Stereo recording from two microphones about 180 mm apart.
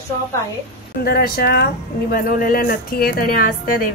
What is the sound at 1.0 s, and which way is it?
Speech, 60° left (ahead or behind).